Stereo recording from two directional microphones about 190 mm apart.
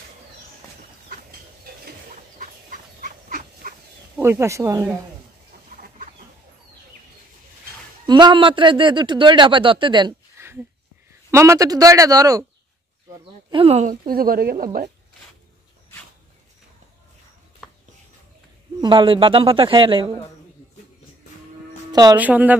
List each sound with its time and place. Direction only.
1.1 s fowl: 50° right (ahead or behind)
4.2 s a man's voice: 15° right (ahead or behind)
5.7 s chicken: 45° right (ahead or behind)
8.1 s a man's voice: 25° right (ahead or behind)
10.4 s a sound: 15° right (ahead or behind)
11.2 s a man's voice: 15° right (ahead or behind); by 13.9 s 35° right (ahead or behind)
14.0 s speech: 50° right (ahead or behind)
18.8 s a man's voice: 25° right (ahead or behind)
22.1 s a man's voice: 10° right (ahead or behind)